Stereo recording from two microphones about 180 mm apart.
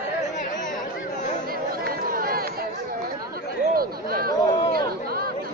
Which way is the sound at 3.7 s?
55° right (ahead or behind).